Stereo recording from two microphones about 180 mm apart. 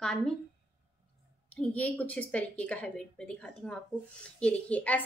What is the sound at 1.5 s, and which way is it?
Speech, 5° left (ahead or behind).